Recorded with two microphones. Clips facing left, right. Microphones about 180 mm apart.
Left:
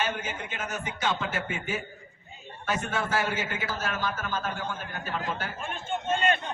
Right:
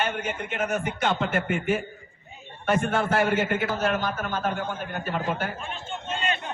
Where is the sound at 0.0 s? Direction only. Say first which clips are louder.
Right 3 dB; 60° right (ahead or behind).